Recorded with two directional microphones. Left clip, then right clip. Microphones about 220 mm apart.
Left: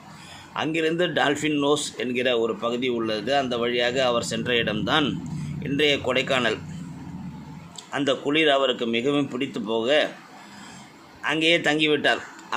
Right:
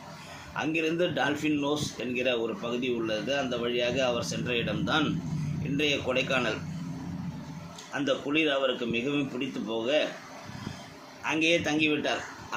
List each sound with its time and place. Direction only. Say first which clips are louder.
0.5 s a man's voice: left 5 dB; 40° left (ahead or behind)
7.9 s a man's voice: left 5 dB; 45° left (ahead or behind)
11.2 s a man's voice: left 5 dB; 35° left (ahead or behind)